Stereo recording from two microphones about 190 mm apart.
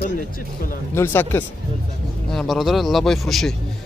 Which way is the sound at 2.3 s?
Centre (ahead or behind).